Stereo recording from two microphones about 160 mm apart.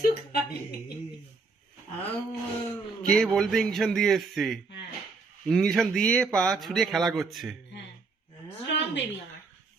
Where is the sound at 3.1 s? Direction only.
5° left (ahead or behind).